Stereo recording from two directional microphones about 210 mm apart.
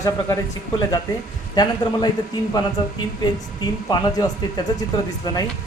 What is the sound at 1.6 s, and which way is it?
Speech, 20° left (ahead or behind).